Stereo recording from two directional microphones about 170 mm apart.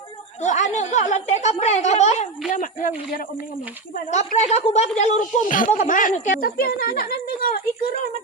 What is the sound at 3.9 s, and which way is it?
A woman's voice, 45° left (ahead or behind).